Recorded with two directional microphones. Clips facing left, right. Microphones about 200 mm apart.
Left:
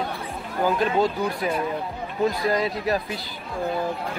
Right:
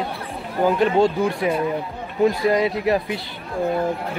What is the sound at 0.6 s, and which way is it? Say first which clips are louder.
Speech: right 5 dB; 25° right (ahead or behind).